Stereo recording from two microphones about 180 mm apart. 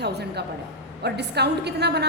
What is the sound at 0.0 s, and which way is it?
A woman's voice, 65° right (ahead or behind).